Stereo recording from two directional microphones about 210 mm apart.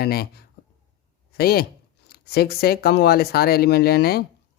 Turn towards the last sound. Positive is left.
turn(degrees=50)  # may be behind; listen again after turning